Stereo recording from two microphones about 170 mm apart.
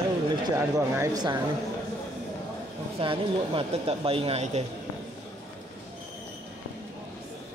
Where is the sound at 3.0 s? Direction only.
30° right (ahead or behind).